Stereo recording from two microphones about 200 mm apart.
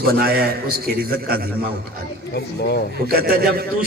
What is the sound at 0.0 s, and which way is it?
A man's voice, 50° right (ahead or behind).